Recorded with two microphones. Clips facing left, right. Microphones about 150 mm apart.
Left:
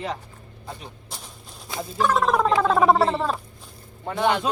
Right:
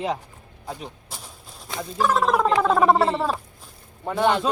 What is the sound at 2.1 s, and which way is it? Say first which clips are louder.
Speech: even; 5° right (ahead or behind).